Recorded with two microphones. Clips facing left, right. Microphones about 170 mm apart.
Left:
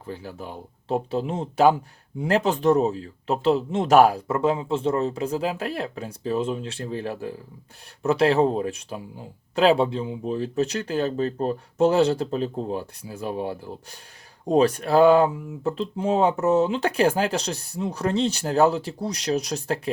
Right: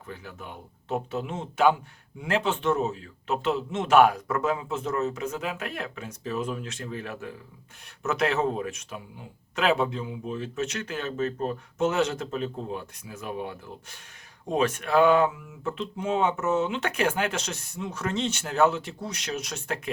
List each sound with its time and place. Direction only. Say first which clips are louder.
0.0 s speech: left 6 dB; 30° left (ahead or behind)